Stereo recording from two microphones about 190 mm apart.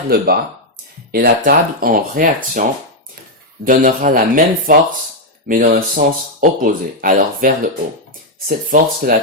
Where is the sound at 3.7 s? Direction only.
45° right (ahead or behind).